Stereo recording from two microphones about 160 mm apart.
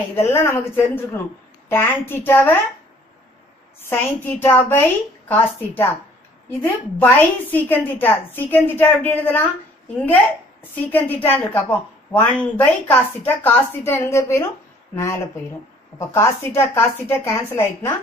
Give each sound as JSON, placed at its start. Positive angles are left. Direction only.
{"t": 0.1, "sound": "a woman's voice", "side_deg": 15}
{"t": 3.9, "sound": "a woman's voice", "side_deg": 15}
{"t": 16.1, "sound": "a woman's voice", "side_deg": 15}